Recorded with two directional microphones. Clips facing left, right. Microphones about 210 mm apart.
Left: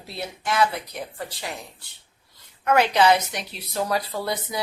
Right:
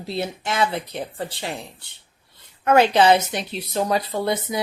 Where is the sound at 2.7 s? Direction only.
30° right (ahead or behind).